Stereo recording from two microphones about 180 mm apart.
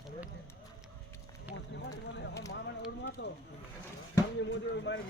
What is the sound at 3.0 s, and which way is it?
Speech, 60° left (ahead or behind).